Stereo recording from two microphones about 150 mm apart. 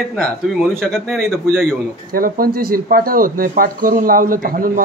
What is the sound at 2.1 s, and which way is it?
Speech, 75° right (ahead or behind).